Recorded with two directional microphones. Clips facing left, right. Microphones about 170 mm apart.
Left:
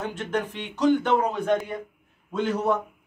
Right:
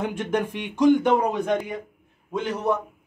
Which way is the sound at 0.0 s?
10° right (ahead or behind).